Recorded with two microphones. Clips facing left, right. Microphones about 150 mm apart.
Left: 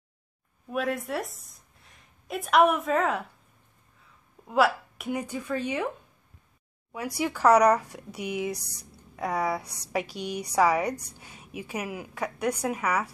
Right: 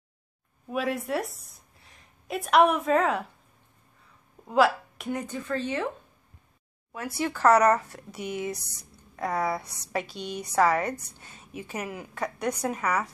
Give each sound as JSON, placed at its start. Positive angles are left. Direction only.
{"t": 0.7, "sound": "a woman's voice", "side_deg": 0}
{"t": 4.5, "sound": "speech", "side_deg": 0}
{"t": 6.9, "sound": "speech", "side_deg": 10}